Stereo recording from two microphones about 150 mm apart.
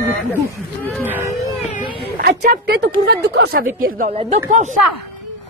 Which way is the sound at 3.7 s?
70° right (ahead or behind).